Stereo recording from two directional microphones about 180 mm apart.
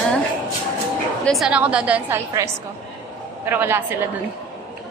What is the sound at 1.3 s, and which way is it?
Speech, 5° right (ahead or behind).